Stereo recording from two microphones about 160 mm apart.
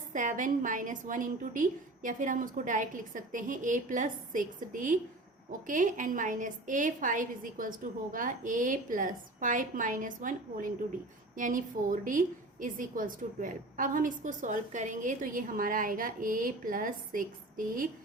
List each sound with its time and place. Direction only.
0.1 s a woman's voice: 55° right (ahead or behind)